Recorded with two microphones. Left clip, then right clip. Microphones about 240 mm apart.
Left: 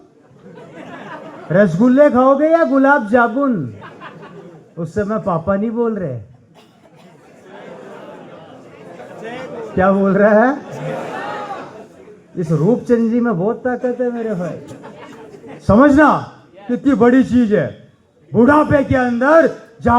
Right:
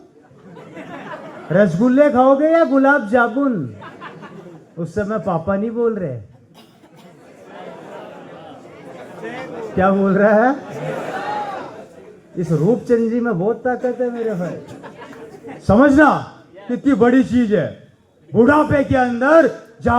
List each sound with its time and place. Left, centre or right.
1.5 s speech: left
4.8 s speech: left
9.7 s speech: left
12.4 s speech: left
15.6 s speech: left